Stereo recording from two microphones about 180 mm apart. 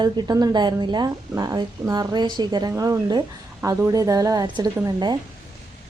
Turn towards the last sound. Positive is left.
turn(degrees=-25)  # may be behind; listen again after turning